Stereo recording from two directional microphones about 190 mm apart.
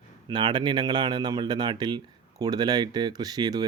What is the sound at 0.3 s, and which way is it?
Speech, 25° right (ahead or behind).